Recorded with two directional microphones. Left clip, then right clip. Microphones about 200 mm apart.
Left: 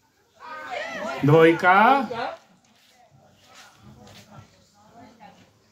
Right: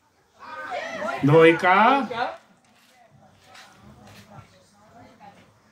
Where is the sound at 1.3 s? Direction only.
20° left (ahead or behind).